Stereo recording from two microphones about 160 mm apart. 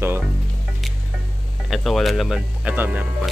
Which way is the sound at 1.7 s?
Centre (ahead or behind).